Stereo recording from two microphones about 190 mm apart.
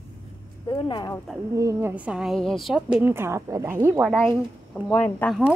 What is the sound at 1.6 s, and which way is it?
A woman's voice, 15° right (ahead or behind).